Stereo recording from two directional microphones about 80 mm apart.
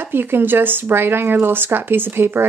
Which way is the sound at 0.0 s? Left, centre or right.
Right.